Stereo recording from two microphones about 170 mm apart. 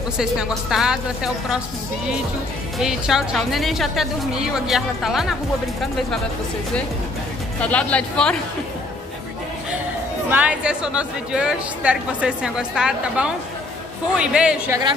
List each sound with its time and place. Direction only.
0.2 s speech: 5° right (ahead or behind)
2.8 s speech: 5° right (ahead or behind)
7.6 s speech: 5° left (ahead or behind)
10.3 s speech: 10° right (ahead or behind)
14.7 s speech: 25° right (ahead or behind)